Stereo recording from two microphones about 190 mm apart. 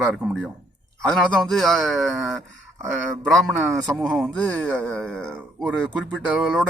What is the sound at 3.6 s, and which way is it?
A man's voice, 5° right (ahead or behind).